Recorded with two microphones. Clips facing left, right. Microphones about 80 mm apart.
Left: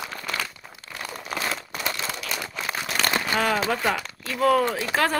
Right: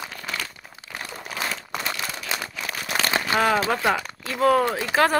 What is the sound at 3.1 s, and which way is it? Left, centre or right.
Speech, centre.